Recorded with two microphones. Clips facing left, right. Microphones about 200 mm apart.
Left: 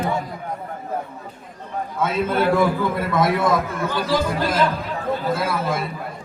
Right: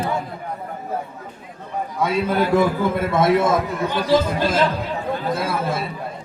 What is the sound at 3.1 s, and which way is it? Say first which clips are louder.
A man's voice: right 2 dB; 25° right (ahead or behind).